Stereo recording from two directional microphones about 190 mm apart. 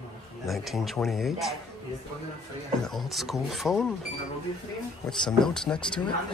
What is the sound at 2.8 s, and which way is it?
Speech, centre (ahead or behind).